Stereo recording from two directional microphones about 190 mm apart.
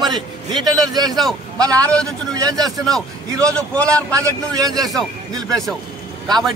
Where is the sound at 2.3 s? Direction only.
20° right (ahead or behind).